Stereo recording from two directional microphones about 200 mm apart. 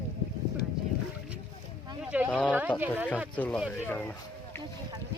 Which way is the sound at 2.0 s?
5° right (ahead or behind).